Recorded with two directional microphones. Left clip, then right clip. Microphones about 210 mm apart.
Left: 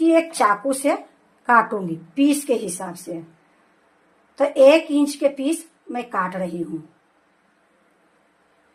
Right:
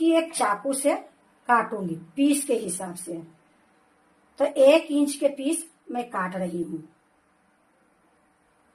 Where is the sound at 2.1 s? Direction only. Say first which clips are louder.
Left 4 dB; 20° left (ahead or behind).